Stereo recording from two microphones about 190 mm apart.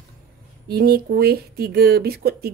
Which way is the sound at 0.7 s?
55° right (ahead or behind).